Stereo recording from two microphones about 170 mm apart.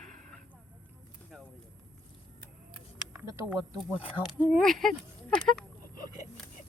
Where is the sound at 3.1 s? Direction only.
15° right (ahead or behind).